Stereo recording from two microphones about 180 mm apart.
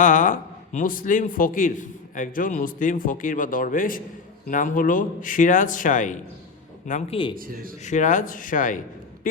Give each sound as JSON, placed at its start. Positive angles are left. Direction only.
{"t": 0.0, "sound": "a man's voice", "side_deg": 45}
{"t": 7.3, "sound": "speech", "side_deg": -55}
{"t": 7.8, "sound": "a man's voice", "side_deg": 40}